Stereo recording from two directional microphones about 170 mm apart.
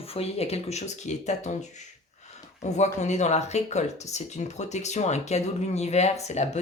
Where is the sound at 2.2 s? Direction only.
40° left (ahead or behind).